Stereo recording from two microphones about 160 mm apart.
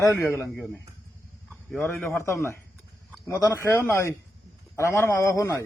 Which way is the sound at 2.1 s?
15° left (ahead or behind).